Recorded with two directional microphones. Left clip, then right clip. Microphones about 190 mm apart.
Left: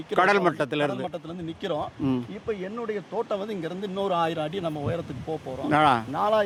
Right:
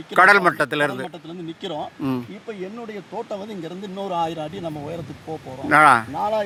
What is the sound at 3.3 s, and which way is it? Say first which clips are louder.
Speech: left 1 dB; centre (ahead or behind).